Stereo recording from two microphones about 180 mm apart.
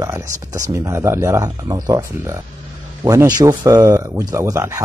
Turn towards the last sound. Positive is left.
turn(degrees=-15)  # may be behind; listen again after turning